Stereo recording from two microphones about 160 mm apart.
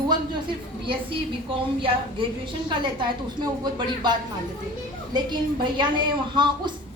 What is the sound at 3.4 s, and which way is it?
Speech, 25° right (ahead or behind).